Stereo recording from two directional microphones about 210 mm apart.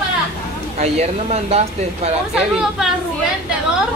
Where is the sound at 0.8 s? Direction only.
30° right (ahead or behind).